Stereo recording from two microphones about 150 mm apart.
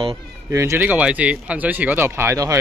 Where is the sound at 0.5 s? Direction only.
20° right (ahead or behind).